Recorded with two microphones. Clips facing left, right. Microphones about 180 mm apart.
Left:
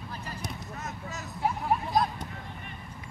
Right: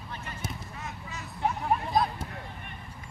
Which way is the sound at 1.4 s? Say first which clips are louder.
Even; centre (ahead or behind).